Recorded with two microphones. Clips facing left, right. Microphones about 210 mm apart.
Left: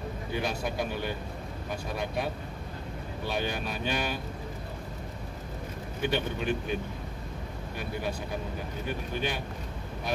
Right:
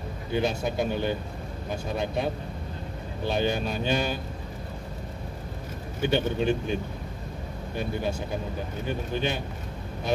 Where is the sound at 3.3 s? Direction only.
25° right (ahead or behind).